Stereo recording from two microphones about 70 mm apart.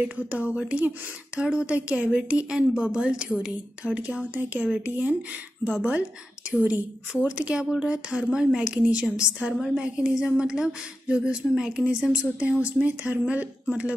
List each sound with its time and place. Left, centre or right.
0.0 s a woman's voice: centre